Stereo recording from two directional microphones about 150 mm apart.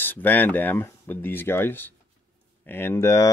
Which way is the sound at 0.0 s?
15° left (ahead or behind).